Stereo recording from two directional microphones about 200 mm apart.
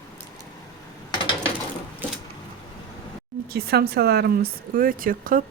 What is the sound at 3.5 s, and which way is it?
Speech, 55° right (ahead or behind).